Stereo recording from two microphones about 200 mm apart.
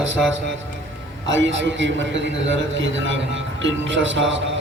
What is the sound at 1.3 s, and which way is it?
A man's voice, 70° right (ahead or behind).